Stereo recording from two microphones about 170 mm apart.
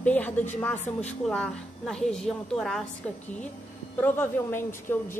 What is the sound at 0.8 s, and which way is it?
Speech, 40° left (ahead or behind).